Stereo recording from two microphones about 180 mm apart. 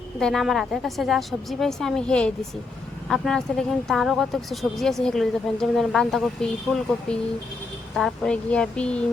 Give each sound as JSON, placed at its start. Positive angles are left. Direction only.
{"t": 0.2, "sound": "speech", "side_deg": 0}